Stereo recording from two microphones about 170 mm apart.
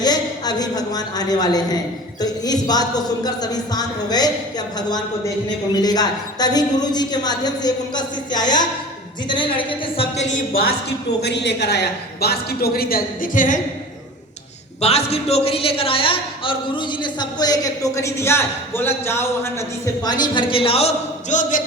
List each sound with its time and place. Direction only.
0.0 s a woman's voice: 25° left (ahead or behind)
5.7 s speech: 25° left (ahead or behind)
10.2 s speech: 60° left (ahead or behind)
11.2 s a woman's voice: 90° left; by 13.6 s 50° left (ahead or behind)
14.8 s a man's voice: 40° left (ahead or behind)